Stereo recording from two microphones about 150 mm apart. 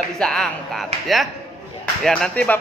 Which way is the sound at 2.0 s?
5° left (ahead or behind).